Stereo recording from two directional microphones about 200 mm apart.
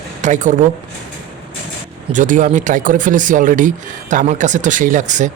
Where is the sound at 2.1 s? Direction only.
40° right (ahead or behind).